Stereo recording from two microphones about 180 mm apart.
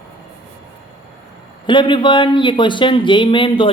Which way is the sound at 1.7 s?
25° left (ahead or behind).